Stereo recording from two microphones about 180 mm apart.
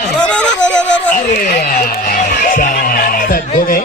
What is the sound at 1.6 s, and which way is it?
Music, 55° left (ahead or behind).